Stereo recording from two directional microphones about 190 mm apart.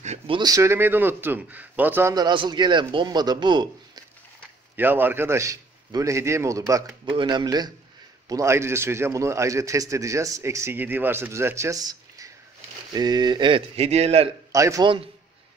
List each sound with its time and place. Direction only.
0.0 s a sound: 35° right (ahead or behind)
0.4 s a man's voice: 15° right (ahead or behind)
4.7 s a man's voice: 10° right (ahead or behind); by 14.3 s 35° right (ahead or behind)
14.5 s a man's voice: 15° right (ahead or behind)